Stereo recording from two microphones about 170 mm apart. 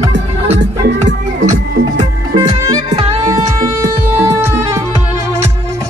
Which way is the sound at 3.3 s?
20° right (ahead or behind).